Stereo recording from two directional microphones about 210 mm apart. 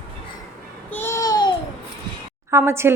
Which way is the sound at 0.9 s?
10° left (ahead or behind).